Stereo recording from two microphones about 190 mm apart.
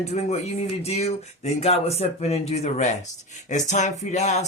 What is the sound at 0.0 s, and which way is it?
Speech, 35° left (ahead or behind).